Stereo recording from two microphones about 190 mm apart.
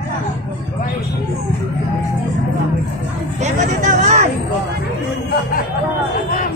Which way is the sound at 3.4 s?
40° right (ahead or behind).